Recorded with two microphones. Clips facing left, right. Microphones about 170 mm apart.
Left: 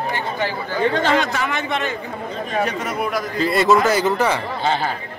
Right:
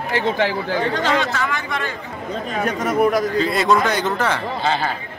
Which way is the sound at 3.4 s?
Centre (ahead or behind).